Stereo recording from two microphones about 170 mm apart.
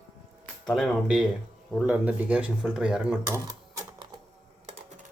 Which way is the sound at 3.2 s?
20° right (ahead or behind).